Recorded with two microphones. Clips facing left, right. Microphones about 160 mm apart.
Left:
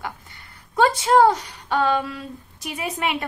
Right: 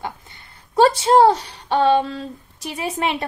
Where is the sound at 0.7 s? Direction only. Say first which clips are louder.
Right 3 dB; 30° right (ahead or behind).